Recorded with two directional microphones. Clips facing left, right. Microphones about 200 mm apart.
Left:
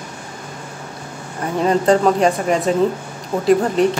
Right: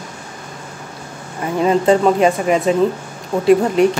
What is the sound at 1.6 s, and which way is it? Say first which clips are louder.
Speech: right 1 dB; 5° right (ahead or behind).